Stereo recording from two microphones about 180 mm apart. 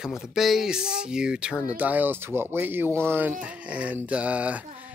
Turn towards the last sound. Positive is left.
turn(degrees=-10)  # may be behind; listen again after turning